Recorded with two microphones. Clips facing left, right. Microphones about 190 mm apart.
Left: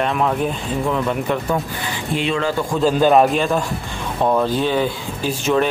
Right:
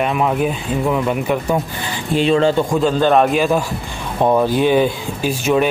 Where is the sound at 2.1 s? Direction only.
35° right (ahead or behind).